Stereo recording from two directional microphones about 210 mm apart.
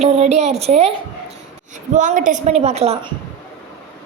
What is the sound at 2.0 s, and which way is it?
A woman's voice, 40° right (ahead or behind).